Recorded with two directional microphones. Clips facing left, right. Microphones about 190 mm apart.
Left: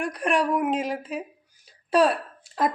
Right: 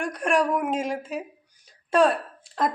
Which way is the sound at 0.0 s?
Centre (ahead or behind).